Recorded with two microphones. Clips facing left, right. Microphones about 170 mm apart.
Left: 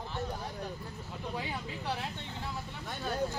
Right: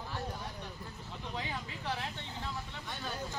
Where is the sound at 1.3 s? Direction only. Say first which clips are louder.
Left 2 dB; 15° left (ahead or behind).